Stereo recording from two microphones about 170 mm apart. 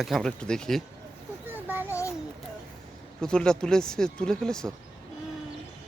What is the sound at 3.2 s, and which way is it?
Speech, 5° left (ahead or behind).